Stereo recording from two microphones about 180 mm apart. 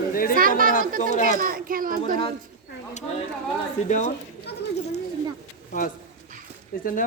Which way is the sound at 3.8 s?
45° left (ahead or behind).